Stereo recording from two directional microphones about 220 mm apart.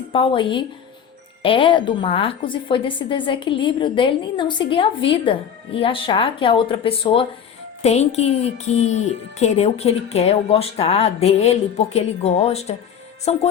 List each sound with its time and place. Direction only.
0.1 s speech: 25° left (ahead or behind)